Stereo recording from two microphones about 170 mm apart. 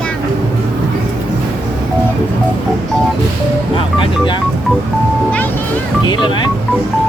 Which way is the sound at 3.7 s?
30° left (ahead or behind).